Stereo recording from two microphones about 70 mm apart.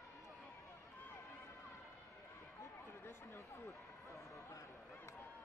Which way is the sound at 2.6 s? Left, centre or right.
Left.